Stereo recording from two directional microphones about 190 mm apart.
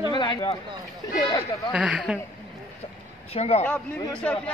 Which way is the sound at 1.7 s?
5° right (ahead or behind).